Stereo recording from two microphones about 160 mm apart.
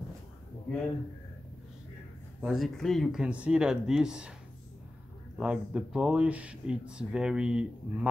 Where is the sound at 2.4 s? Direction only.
Centre (ahead or behind).